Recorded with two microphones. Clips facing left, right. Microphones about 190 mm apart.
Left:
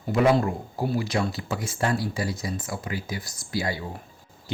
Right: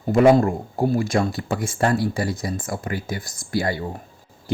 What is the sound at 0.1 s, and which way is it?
Speech, 45° right (ahead or behind).